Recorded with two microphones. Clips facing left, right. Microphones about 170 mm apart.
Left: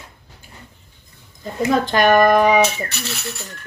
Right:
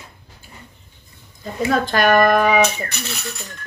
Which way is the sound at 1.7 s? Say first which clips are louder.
Left 1 dB; 15° left (ahead or behind).